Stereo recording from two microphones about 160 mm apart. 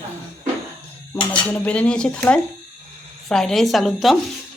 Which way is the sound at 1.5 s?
10° left (ahead or behind).